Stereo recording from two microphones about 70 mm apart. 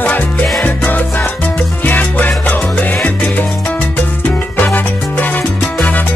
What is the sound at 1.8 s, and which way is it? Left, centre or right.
Music, left.